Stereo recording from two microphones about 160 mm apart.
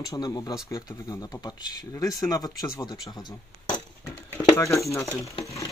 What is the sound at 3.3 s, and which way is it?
Glass, 25° left (ahead or behind).